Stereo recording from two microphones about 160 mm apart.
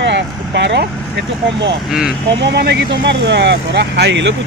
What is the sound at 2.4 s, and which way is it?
Speech, 90° right.